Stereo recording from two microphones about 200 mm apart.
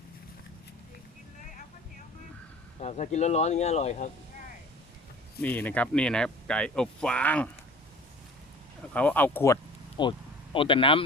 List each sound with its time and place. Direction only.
2.8 s speech: 35° left (ahead or behind)
5.4 s speech: 10° left (ahead or behind)
8.9 s speech: 5° left (ahead or behind)
10.0 s speech: 25° left (ahead or behind)